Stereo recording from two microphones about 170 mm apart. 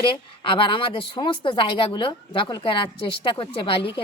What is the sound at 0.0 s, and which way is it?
A woman's voice, 30° left (ahead or behind).